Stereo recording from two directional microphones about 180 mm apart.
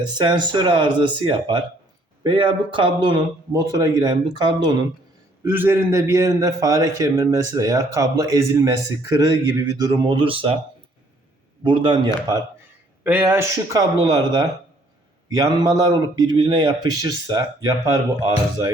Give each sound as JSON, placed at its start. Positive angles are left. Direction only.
{"t": 0.0, "sound": "a man's voice", "side_deg": -25}
{"t": 5.4, "sound": "a man's voice", "side_deg": -10}
{"t": 11.6, "sound": "a man's voice", "side_deg": -25}
{"t": 13.1, "sound": "a man's voice", "side_deg": -10}